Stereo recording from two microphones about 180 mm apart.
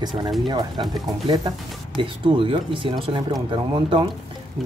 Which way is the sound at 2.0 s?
30° right (ahead or behind).